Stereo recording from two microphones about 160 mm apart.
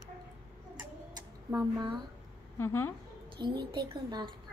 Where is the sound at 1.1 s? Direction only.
20° right (ahead or behind).